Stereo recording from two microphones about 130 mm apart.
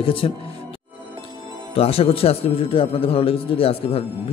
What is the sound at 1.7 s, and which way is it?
A man's voice, 50° left (ahead or behind).